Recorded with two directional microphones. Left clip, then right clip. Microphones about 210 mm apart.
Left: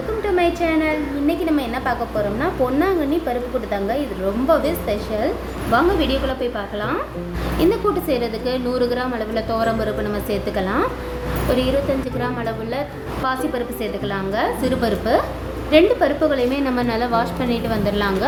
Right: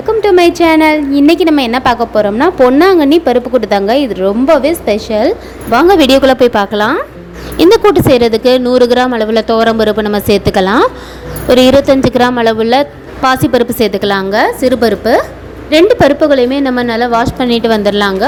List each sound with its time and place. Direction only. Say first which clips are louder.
0.2 s a woman's voice: right 11 dB; 45° right (ahead or behind)